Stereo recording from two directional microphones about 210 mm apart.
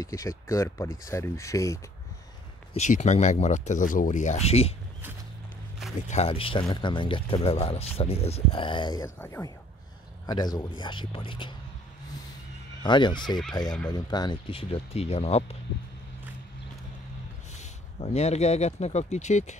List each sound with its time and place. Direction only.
0.0 s speech: 15° left (ahead or behind)
2.7 s speech: 35° left (ahead or behind)
6.0 s speech: 30° left (ahead or behind)
12.8 s speech: 20° left (ahead or behind)
17.6 s speech: 30° left (ahead or behind)